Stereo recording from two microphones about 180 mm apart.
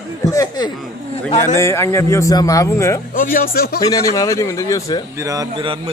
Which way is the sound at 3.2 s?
50° left (ahead or behind).